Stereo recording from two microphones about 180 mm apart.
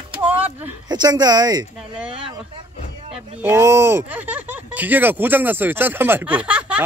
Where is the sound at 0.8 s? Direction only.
25° right (ahead or behind).